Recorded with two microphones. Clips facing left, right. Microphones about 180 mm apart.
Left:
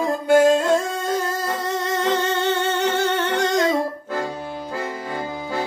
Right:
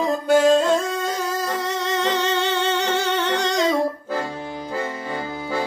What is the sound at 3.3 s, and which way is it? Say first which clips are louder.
Humming: left 1 dB; 50° left (ahead or behind).